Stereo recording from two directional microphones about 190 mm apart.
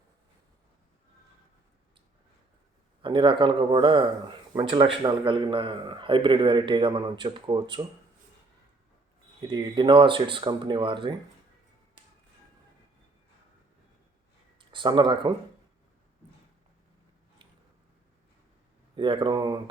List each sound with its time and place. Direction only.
3.0 s a man's voice: 25° right (ahead or behind)
9.5 s a man's voice: 25° right (ahead or behind)
14.6 s speech: 25° right (ahead or behind)
18.9 s a man's voice: 25° right (ahead or behind)